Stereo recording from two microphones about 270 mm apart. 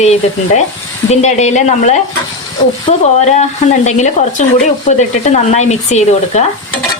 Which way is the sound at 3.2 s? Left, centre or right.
Left.